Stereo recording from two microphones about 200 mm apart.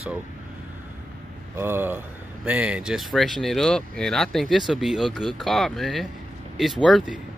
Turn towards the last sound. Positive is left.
turn(degrees=-5)  # may be behind; listen again after turning